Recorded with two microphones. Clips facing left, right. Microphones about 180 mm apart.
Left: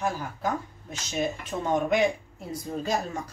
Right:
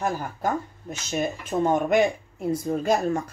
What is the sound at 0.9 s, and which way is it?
Speech, 50° right (ahead or behind).